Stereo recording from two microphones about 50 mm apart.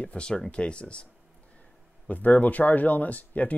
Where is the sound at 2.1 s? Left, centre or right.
Left.